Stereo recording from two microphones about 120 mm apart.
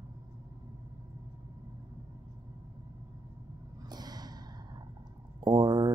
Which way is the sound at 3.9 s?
35° right (ahead or behind).